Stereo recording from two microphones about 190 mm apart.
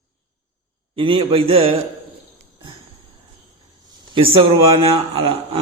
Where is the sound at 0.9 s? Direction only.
30° right (ahead or behind).